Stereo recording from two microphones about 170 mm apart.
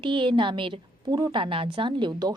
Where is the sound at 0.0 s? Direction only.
30° right (ahead or behind).